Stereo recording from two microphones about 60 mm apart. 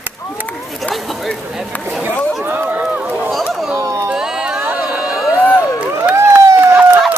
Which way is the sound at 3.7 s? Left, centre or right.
Right.